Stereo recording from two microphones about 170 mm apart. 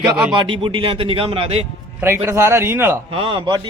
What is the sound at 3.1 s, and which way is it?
Speech, 30° right (ahead or behind).